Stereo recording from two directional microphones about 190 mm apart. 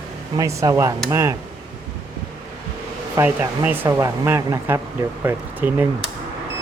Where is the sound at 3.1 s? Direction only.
10° right (ahead or behind).